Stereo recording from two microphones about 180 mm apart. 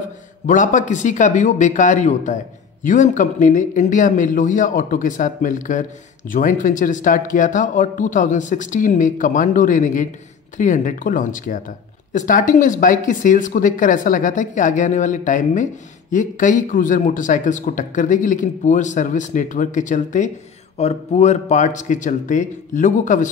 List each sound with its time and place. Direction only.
0.5 s speech: 45° left (ahead or behind)